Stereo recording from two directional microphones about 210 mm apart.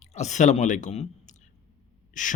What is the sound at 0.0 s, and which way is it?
Speech, 30° left (ahead or behind).